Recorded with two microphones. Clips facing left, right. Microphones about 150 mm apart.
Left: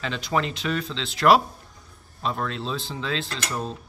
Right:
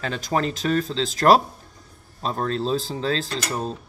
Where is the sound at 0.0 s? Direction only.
45° right (ahead or behind).